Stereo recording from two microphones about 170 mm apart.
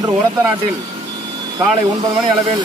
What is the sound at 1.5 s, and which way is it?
Speech, 20° right (ahead or behind).